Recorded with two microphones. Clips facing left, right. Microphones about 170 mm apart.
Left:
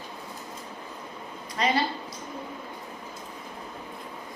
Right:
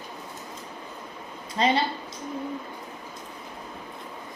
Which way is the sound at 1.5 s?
30° right (ahead or behind).